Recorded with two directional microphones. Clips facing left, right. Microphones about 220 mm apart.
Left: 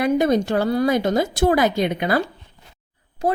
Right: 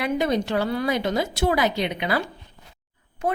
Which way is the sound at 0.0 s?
45° left (ahead or behind).